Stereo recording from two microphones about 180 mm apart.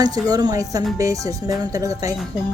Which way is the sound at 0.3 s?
20° right (ahead or behind).